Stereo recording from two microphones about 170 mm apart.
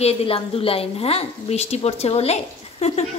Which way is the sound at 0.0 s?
35° left (ahead or behind).